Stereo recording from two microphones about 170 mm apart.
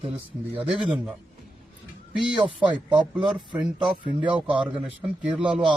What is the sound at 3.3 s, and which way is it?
A man's voice, 10° right (ahead or behind).